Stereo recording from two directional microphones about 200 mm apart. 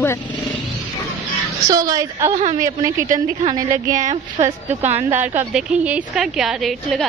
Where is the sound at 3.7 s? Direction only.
40° right (ahead or behind).